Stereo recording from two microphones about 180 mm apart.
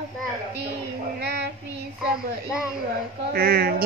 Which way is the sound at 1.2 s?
70° right (ahead or behind).